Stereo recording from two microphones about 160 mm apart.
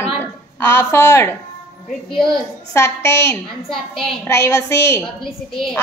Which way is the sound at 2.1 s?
5° left (ahead or behind).